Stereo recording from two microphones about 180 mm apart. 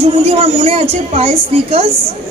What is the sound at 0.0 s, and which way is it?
A woman's voice, 35° right (ahead or behind).